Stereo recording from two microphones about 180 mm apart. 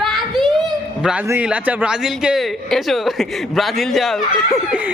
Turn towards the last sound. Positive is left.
turn(degrees=-5)  # may be behind; listen again after turning